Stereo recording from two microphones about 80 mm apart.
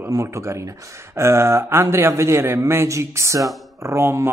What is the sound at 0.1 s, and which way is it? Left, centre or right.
Speech, right.